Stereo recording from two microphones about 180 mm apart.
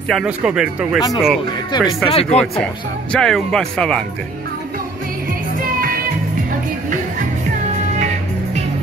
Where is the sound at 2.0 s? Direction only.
35° left (ahead or behind).